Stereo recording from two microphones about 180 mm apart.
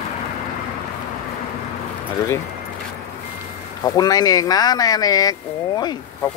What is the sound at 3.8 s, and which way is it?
Speech, 20° left (ahead or behind).